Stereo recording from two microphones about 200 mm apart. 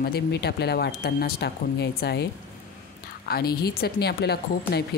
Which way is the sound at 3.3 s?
50° left (ahead or behind).